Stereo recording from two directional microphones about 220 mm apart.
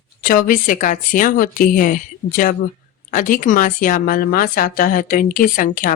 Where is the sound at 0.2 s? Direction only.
40° left (ahead or behind).